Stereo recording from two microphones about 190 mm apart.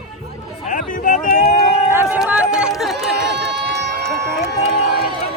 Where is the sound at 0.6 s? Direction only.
40° left (ahead or behind).